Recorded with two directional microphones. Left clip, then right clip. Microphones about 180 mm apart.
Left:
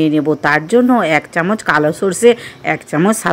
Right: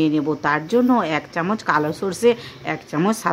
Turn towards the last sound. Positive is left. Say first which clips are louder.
# left 6 dB
turn(degrees=20)  # may be behind; listen again after turning